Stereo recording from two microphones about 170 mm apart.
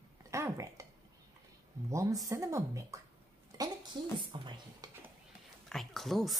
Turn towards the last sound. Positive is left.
turn(degrees=0)  # may be behind; listen again after turning